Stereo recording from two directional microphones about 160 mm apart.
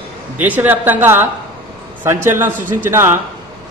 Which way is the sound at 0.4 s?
10° right (ahead or behind).